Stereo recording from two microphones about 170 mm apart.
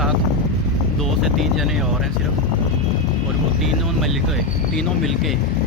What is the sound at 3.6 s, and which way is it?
Speech, centre (ahead or behind).